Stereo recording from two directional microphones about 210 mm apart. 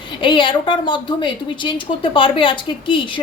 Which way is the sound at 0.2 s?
25° left (ahead or behind).